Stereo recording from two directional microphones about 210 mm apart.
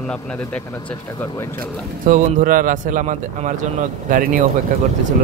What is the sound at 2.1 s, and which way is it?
Speech, 40° right (ahead or behind).